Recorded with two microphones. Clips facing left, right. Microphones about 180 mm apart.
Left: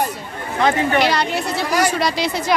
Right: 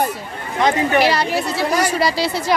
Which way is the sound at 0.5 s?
20° right (ahead or behind).